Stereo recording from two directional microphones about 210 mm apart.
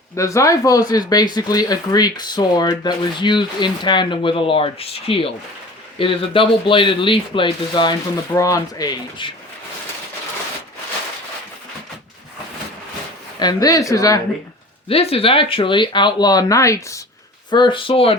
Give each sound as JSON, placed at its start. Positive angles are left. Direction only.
{"t": 0.2, "sound": "speech", "side_deg": 15}
{"t": 13.4, "sound": "speech", "side_deg": 20}
{"t": 14.8, "sound": "speech", "side_deg": 25}